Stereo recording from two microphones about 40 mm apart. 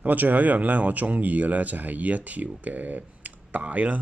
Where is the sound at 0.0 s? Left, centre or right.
Right.